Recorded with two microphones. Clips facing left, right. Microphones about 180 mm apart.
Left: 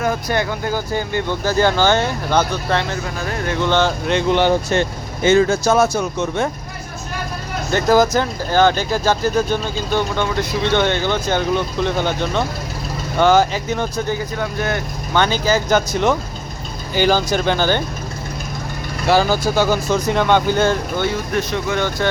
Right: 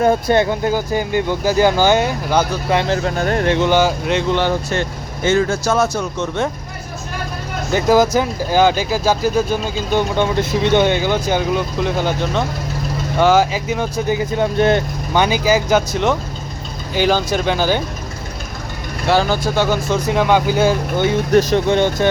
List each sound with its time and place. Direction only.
0.0 s speech: 25° right (ahead or behind); by 2.8 s 10° right (ahead or behind)
3.4 s speech: 25° right (ahead or behind)
3.7 s speech: 5° right (ahead or behind)
4.3 s speech: 20° left (ahead or behind)
7.7 s speech: 5° right (ahead or behind); by 14.8 s 25° right (ahead or behind)
15.1 s speech: 10° right (ahead or behind)
16.9 s speech: centre (ahead or behind)
19.0 s speech: 5° left (ahead or behind)
21.3 s speech: 30° right (ahead or behind)